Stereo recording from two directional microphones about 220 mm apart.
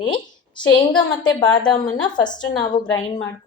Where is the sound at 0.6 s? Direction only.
20° left (ahead or behind).